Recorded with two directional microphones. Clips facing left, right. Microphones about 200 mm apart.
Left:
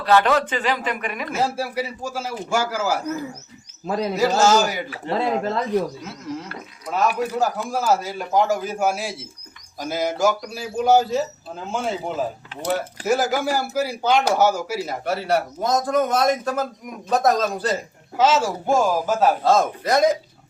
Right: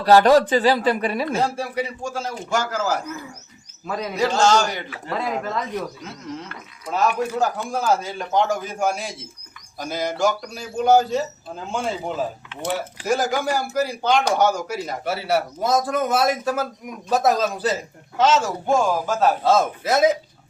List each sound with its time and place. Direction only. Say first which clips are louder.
0.0 s speech: right 4 dB; 40° right (ahead or behind)
1.4 s a man's voice: even; 5° left (ahead or behind)
3.8 s speech: left 4 dB; 30° left (ahead or behind)
4.1 s a man's voice: left 1 dB; 5° left (ahead or behind)
4.9 s speech: left 4 dB; 30° left (ahead or behind)
7.2 s a man's voice: even; 5° left (ahead or behind)
18.2 s a man's voice: even; 10° left (ahead or behind)
19.5 s a man's voice: even; 5° right (ahead or behind)